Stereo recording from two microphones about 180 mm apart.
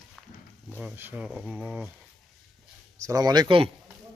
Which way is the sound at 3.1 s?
20° right (ahead or behind).